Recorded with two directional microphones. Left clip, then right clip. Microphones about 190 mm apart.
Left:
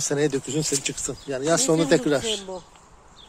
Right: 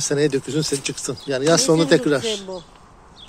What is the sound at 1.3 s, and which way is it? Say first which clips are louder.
Speech: right 5 dB; 5° right (ahead or behind).